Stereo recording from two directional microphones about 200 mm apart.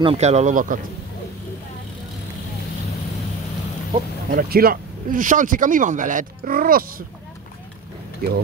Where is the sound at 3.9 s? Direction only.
45° right (ahead or behind).